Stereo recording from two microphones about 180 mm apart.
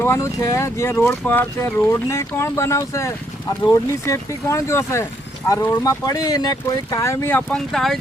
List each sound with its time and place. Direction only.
0.0 s speech: 15° left (ahead or behind)